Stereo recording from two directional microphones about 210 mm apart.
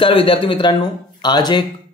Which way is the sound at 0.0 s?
25° left (ahead or behind).